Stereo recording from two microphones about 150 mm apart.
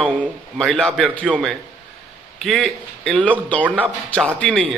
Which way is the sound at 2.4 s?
Centre (ahead or behind).